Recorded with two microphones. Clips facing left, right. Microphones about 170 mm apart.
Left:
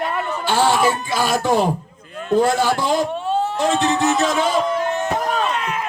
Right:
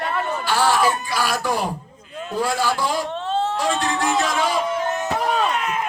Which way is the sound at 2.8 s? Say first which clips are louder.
Left 4 dB; 25° left (ahead or behind).